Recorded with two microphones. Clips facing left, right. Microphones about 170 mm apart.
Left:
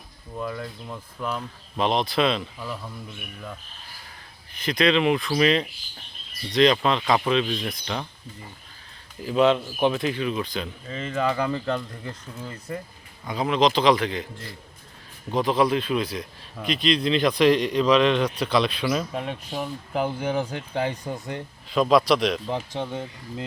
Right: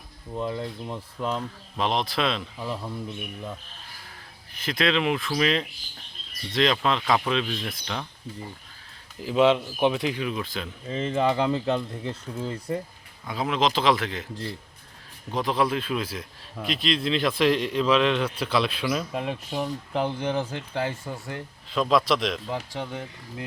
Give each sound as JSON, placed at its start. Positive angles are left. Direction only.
{"t": 0.3, "sound": "speech", "side_deg": -25}
{"t": 1.7, "sound": "speech", "side_deg": 0}
{"t": 2.6, "sound": "speech", "side_deg": -25}
{"t": 4.5, "sound": "speech", "side_deg": 0}
{"t": 9.2, "sound": "speech", "side_deg": -10}
{"t": 10.8, "sound": "speech", "side_deg": -25}
{"t": 13.2, "sound": "speech", "side_deg": 0}
{"t": 15.3, "sound": "speech", "side_deg": 0}
{"t": 21.7, "sound": "speech", "side_deg": 5}
{"t": 22.4, "sound": "speech", "side_deg": 20}